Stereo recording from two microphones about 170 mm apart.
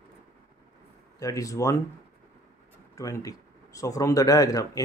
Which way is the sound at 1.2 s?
20° left (ahead or behind).